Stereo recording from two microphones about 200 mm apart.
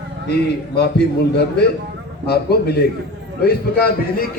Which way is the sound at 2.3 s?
55° left (ahead or behind).